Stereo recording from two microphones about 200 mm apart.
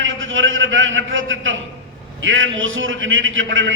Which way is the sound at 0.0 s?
75° right (ahead or behind).